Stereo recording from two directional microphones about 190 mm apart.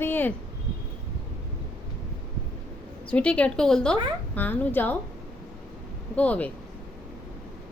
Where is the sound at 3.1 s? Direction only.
5° left (ahead or behind).